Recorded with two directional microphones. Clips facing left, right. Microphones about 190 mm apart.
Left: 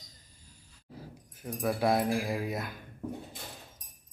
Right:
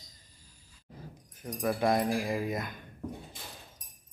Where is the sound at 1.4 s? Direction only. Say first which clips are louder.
Even; 5° left (ahead or behind).